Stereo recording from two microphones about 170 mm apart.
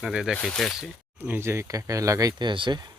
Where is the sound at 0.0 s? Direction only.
5° right (ahead or behind).